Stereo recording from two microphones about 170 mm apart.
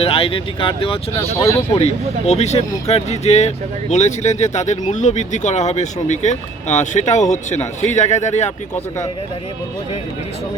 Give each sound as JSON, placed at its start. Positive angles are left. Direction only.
{"t": 0.0, "sound": "speech", "side_deg": 35}